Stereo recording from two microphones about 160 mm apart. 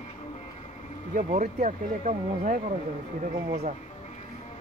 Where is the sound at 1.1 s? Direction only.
50° right (ahead or behind).